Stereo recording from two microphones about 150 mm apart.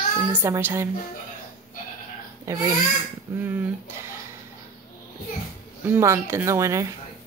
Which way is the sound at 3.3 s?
10° right (ahead or behind).